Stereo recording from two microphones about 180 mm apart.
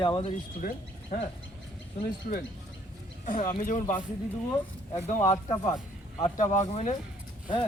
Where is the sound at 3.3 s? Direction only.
45° left (ahead or behind).